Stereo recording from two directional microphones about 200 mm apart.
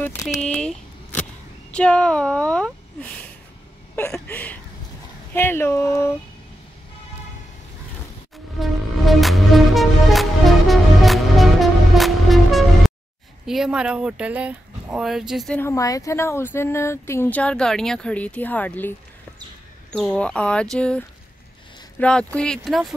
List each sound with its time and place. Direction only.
0.4 s a sound: 5° left (ahead or behind)
1.7 s speech: 5° left (ahead or behind)
8.5 s music: centre (ahead or behind)
13.5 s speech: 5° right (ahead or behind)
15.6 s speech: 15° left (ahead or behind)
22.0 s speech: 5° left (ahead or behind)